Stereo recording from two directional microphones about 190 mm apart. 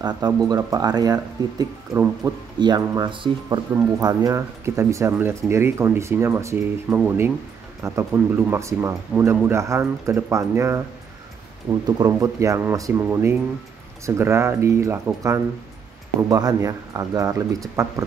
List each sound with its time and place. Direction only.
0.0 s speech: 20° right (ahead or behind)
11.8 s speech: 20° right (ahead or behind)